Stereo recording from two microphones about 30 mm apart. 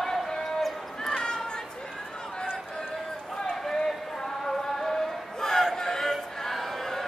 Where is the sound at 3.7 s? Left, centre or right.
Centre.